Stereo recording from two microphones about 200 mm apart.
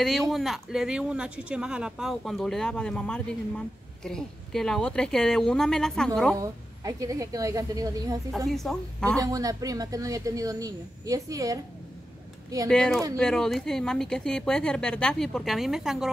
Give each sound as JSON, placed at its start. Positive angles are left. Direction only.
{"t": 0.3, "sound": "speech", "side_deg": 0}
{"t": 6.4, "sound": "speech", "side_deg": -15}
{"t": 8.5, "sound": "speech", "side_deg": 0}
{"t": 9.2, "sound": "speech", "side_deg": -15}
{"t": 12.6, "sound": "speech", "side_deg": 5}